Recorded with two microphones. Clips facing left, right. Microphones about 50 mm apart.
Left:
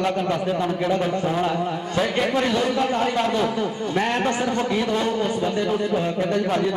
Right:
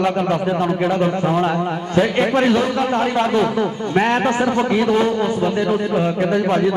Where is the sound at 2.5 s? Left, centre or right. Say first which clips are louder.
Right 3 dB; centre.